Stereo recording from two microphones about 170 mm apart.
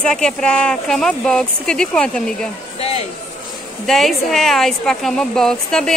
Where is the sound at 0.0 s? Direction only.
5° left (ahead or behind).